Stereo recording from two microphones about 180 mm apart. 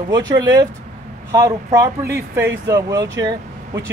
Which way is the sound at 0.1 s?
20° right (ahead or behind).